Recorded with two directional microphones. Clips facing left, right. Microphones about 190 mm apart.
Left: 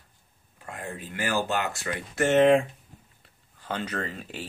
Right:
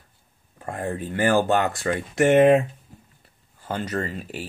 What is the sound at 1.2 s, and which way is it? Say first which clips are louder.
Speech: right 8 dB; 50° right (ahead or behind).